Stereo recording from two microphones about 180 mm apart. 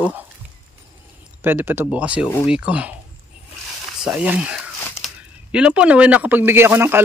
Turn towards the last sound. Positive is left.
turn(degrees=-15)  # may be behind; listen again after turning